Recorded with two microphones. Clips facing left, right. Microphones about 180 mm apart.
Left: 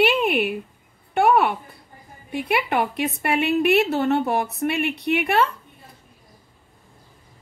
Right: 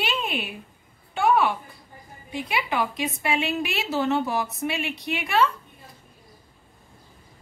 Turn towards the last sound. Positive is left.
turn(degrees=60)  # may be behind; listen again after turning